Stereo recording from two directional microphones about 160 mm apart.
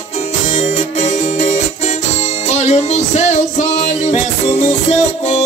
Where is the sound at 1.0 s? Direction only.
45° left (ahead or behind).